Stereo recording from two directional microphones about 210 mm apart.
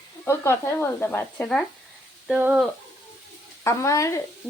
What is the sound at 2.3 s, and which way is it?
Speech, 5° right (ahead or behind).